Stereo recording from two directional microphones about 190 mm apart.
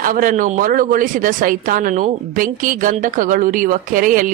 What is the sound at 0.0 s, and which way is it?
Speech, 45° right (ahead or behind).